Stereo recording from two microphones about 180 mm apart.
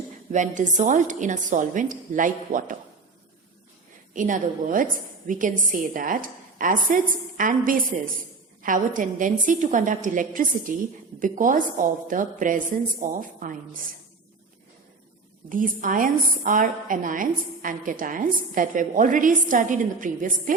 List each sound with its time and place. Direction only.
0.3 s a woman's voice: 45° right (ahead or behind)
4.1 s a woman's voice: 45° right (ahead or behind)
15.4 s a woman's voice: 45° right (ahead or behind)